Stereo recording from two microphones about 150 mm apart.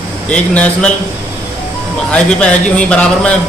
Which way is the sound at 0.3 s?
10° left (ahead or behind).